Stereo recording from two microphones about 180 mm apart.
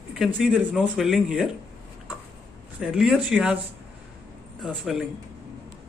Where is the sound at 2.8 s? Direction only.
Centre (ahead or behind).